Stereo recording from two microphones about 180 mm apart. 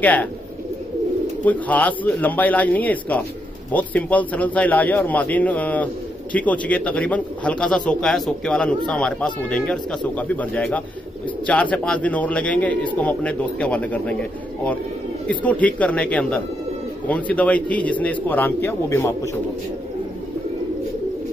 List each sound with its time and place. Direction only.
0.0 s speech: 10° left (ahead or behind)
1.4 s speech: 10° left (ahead or behind)
15.2 s speech: 10° left (ahead or behind)